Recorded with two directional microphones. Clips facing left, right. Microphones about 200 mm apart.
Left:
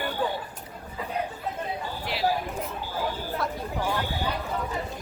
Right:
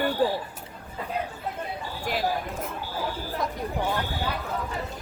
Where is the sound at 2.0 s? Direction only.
45° right (ahead or behind).